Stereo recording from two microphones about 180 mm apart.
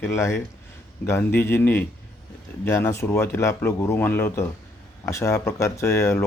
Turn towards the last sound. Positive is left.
turn(degrees=15)  # may be behind; listen again after turning